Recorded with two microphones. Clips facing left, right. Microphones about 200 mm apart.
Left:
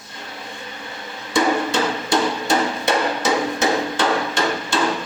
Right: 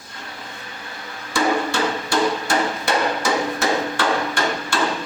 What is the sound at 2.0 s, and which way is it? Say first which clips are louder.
Wood block: left 1 dB; 20° left (ahead or behind).